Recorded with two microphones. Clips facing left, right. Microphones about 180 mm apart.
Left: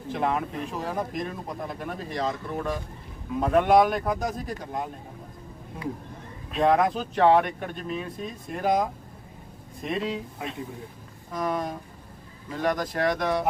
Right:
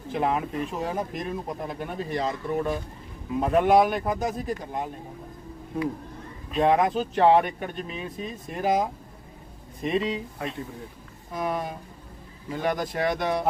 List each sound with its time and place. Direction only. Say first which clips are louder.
0.1 s speech: right 1 dB; centre (ahead or behind)
6.5 s speech: even; centre (ahead or behind)